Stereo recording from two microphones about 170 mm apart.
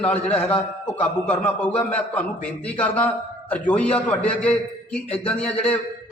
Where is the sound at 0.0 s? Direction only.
10° left (ahead or behind).